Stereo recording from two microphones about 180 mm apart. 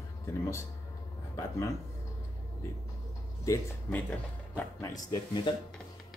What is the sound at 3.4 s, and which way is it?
Speech, 15° left (ahead or behind).